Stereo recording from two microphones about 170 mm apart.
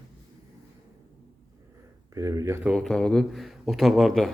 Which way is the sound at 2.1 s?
20° right (ahead or behind).